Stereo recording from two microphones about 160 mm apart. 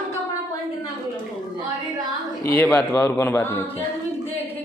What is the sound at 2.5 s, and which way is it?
A man's voice, 10° left (ahead or behind).